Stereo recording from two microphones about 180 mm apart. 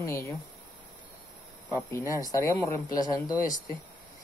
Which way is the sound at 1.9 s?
15° left (ahead or behind).